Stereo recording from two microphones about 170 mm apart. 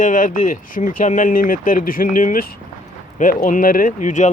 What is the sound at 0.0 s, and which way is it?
Speech, 50° left (ahead or behind).